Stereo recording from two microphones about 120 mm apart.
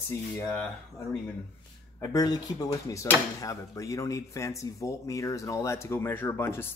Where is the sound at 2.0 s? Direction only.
30° left (ahead or behind).